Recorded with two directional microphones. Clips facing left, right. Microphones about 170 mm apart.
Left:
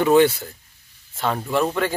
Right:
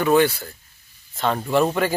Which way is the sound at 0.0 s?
20° left (ahead or behind).